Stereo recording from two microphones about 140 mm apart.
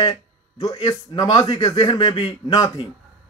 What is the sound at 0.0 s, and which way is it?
Speech, 30° left (ahead or behind).